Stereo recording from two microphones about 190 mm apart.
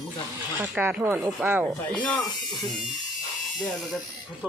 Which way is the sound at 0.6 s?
10° right (ahead or behind).